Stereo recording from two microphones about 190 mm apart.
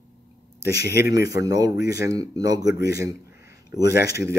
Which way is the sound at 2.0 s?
20° right (ahead or behind).